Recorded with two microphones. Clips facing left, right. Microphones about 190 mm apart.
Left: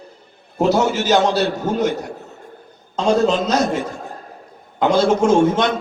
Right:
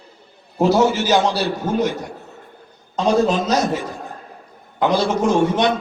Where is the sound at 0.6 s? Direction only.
55° left (ahead or behind).